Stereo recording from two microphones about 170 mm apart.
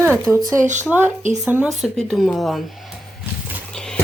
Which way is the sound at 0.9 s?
5° right (ahead or behind).